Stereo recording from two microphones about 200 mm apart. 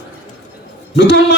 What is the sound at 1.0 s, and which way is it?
Speech, 65° left (ahead or behind).